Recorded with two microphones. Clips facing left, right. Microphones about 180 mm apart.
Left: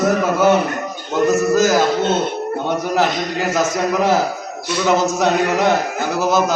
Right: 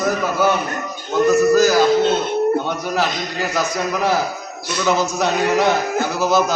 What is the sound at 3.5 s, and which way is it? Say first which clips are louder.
A man's voice: left 4 dB; 20° left (ahead or behind).